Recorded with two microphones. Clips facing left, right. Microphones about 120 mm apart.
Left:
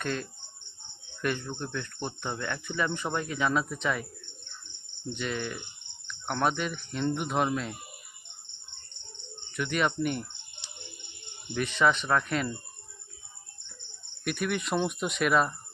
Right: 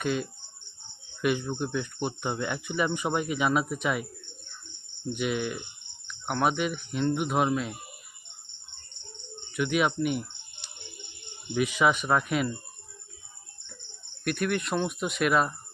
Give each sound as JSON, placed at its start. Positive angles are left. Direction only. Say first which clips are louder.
{"t": 0.0, "sound": "speech", "louder": "right 4 dB", "side_deg": -10}
{"t": 5.1, "sound": "speech", "louder": "right 4 dB", "side_deg": -10}
{"t": 9.5, "sound": "speech", "louder": "right 3 dB", "side_deg": -5}
{"t": 11.5, "sound": "speech", "louder": "right 1 dB", "side_deg": -10}
{"t": 14.3, "sound": "speech", "louder": "right 2 dB", "side_deg": 0}